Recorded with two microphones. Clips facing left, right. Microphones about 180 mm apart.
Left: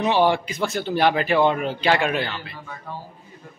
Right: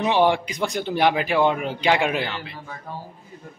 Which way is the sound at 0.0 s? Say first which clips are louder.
Even; 15° right (ahead or behind).